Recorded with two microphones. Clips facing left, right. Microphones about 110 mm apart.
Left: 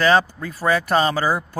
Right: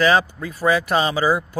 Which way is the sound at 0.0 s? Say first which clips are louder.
Even; 40° left (ahead or behind).